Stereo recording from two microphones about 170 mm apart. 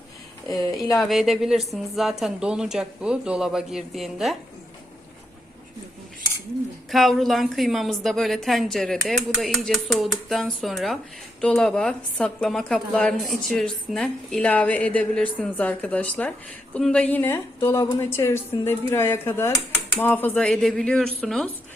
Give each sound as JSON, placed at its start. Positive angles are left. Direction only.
{"t": 0.4, "sound": "speech", "side_deg": 20}
{"t": 0.9, "sound": "a woman's voice", "side_deg": 0}
{"t": 6.9, "sound": "a woman's voice", "side_deg": 0}